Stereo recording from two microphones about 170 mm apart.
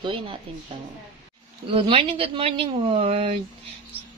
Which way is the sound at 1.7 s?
30° right (ahead or behind).